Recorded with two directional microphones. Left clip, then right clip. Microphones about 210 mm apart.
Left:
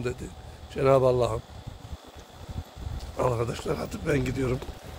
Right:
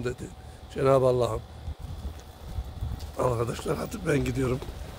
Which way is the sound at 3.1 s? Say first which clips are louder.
Even; 5° right (ahead or behind).